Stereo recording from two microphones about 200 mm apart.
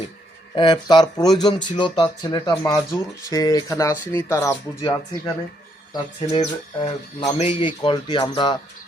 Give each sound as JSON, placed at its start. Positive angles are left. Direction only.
{"t": 0.5, "sound": "speech", "side_deg": 20}
{"t": 6.2, "sound": "speech", "side_deg": 25}